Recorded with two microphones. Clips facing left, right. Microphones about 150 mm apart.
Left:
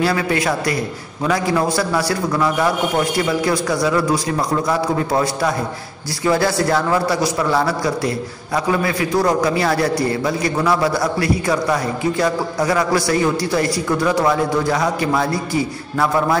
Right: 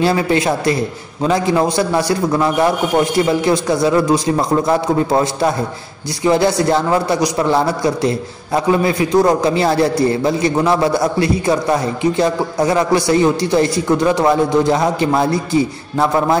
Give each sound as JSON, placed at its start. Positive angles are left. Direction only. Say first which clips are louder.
{"t": 0.0, "sound": "a man's voice", "louder": "right 3 dB", "side_deg": -25}